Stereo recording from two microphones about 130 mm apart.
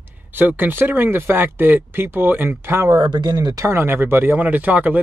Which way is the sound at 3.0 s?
35° right (ahead or behind).